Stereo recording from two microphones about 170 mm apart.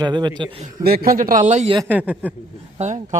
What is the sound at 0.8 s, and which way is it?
Speech, 60° right (ahead or behind).